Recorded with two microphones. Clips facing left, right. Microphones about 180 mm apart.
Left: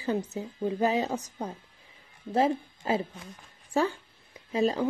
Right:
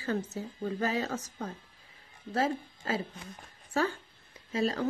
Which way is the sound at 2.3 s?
20° left (ahead or behind).